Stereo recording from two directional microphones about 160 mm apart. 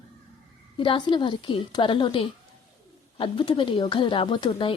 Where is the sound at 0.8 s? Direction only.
30° left (ahead or behind).